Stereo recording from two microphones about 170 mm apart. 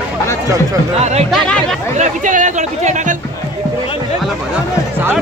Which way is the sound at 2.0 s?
50° right (ahead or behind).